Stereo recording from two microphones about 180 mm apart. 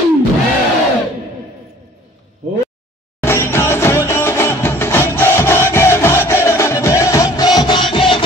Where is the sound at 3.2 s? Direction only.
15° left (ahead or behind).